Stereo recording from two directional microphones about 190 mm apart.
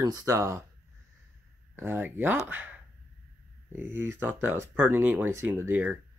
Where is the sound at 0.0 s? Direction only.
15° right (ahead or behind).